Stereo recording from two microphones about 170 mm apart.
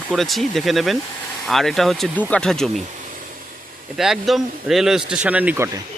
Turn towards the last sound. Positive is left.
turn(degrees=-10)  # may be behind; listen again after turning